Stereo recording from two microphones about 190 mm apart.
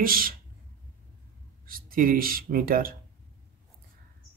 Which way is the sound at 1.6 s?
50° right (ahead or behind).